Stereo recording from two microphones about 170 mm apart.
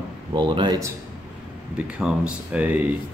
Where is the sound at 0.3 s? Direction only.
25° right (ahead or behind).